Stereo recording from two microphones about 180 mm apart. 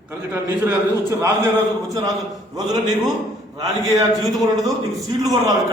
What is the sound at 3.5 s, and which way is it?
A man's voice, 20° right (ahead or behind).